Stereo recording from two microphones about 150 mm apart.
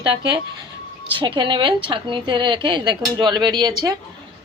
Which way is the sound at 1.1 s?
35° right (ahead or behind).